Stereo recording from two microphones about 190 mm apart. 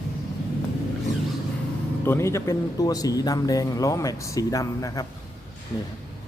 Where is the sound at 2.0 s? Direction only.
15° left (ahead or behind).